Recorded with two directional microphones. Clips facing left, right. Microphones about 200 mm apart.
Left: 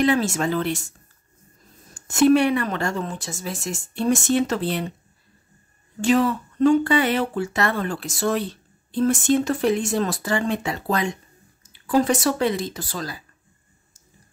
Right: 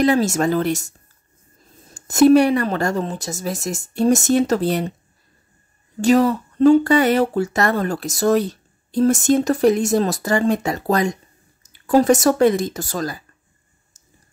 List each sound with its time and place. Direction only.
0.0 s speech: 40° right (ahead or behind)
2.0 s speech: 40° right (ahead or behind)
5.9 s speech: 40° right (ahead or behind)